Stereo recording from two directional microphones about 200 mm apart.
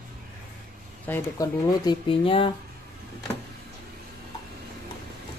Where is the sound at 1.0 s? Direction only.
15° left (ahead or behind).